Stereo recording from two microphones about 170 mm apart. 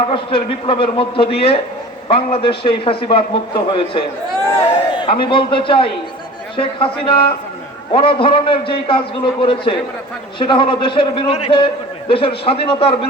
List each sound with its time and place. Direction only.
0.0 s a man's voice: 30° left (ahead or behind)
5.0 s a man's voice: 30° left (ahead or behind)